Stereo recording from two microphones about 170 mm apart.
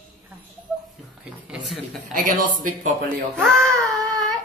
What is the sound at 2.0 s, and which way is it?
Speech, 50° right (ahead or behind).